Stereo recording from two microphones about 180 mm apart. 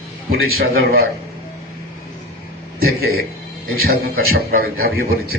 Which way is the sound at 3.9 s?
55° right (ahead or behind).